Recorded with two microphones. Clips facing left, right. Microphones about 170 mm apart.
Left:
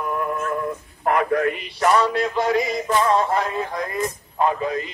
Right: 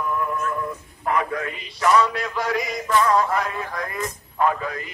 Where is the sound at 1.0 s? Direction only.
50° left (ahead or behind).